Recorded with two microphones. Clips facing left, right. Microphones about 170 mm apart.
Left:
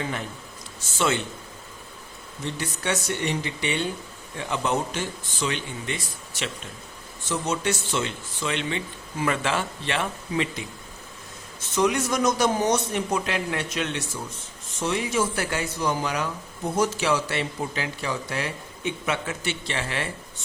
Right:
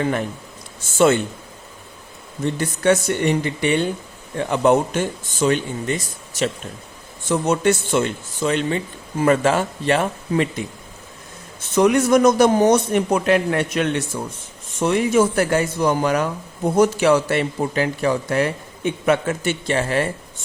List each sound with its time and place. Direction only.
0.9 s a man's voice: 50° right (ahead or behind)
2.4 s a man's voice: 50° right (ahead or behind)
7.3 s a man's voice: 55° right (ahead or behind)
11.7 s a man's voice: 55° right (ahead or behind)